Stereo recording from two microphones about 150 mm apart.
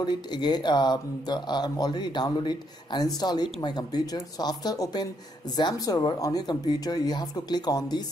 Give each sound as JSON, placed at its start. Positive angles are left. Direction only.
{"t": 0.0, "sound": "speech", "side_deg": 30}